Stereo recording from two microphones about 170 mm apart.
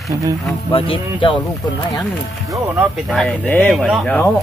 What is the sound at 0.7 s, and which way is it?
Speech, 30° left (ahead or behind).